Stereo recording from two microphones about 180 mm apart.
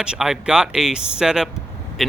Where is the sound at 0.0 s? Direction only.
5° right (ahead or behind).